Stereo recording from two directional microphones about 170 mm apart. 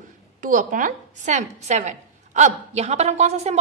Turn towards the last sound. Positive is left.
turn(degrees=-40)  # may be behind; listen again after turning